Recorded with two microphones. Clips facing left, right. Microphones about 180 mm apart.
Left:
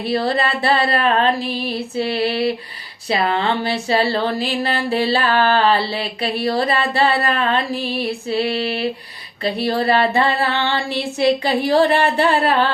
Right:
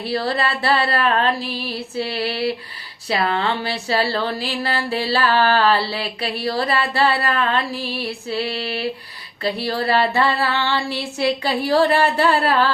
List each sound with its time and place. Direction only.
0.0 s speech: 20° left (ahead or behind)